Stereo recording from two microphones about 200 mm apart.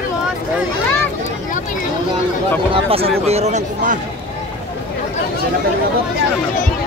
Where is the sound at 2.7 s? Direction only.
30° right (ahead or behind).